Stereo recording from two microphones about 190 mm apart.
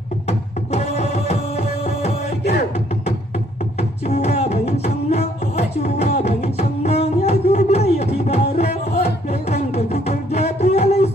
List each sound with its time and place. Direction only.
0.3 s music: 35° left (ahead or behind)
4.1 s music: 35° left (ahead or behind)